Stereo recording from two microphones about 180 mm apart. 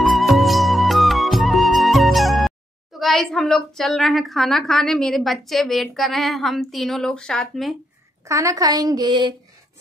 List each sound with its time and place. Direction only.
0.0 s music: centre (ahead or behind)
8.3 s a woman's voice: 15° right (ahead or behind)